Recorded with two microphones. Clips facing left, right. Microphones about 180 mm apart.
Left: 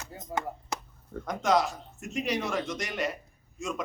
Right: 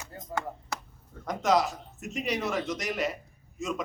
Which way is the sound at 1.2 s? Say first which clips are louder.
Right 1 dB; centre (ahead or behind).